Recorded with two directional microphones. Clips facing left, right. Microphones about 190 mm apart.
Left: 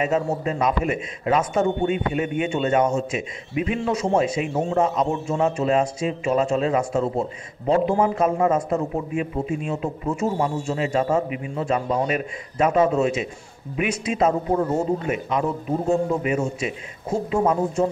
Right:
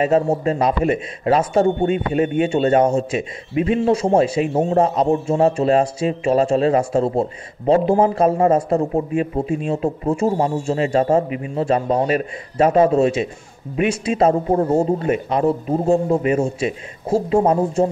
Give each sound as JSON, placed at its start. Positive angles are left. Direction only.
{"t": 0.0, "sound": "a man's voice", "side_deg": -30}